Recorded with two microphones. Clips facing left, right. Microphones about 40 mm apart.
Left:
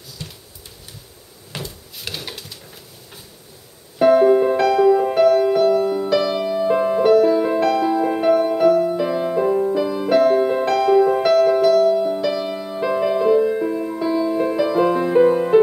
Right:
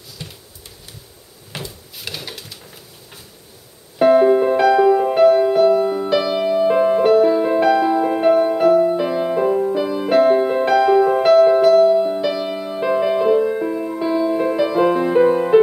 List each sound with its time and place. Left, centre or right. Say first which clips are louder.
0.2 s a sound: even; centre
1.5 s drawer open or close: even; centre
4.0 s music: right 1 dB; centre